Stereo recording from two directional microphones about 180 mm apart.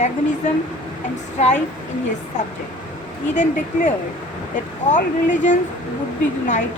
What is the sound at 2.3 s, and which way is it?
A woman's voice, 40° left (ahead or behind).